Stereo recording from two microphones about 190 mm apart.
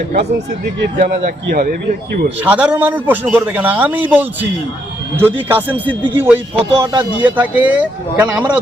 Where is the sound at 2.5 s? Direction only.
10° right (ahead or behind).